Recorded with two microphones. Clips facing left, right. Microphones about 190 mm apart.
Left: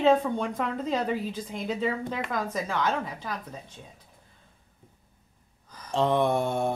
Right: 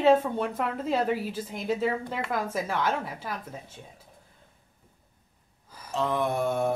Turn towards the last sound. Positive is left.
turn(degrees=0)  # may be behind; listen again after turning